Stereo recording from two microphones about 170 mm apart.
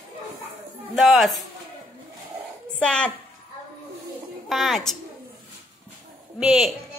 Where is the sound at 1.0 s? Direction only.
Centre (ahead or behind).